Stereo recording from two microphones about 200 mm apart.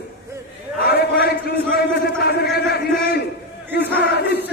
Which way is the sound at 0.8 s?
50° left (ahead or behind).